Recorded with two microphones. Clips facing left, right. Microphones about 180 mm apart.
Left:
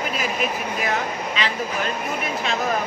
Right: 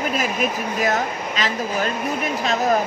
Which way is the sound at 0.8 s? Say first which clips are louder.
Right 4 dB; 40° right (ahead or behind).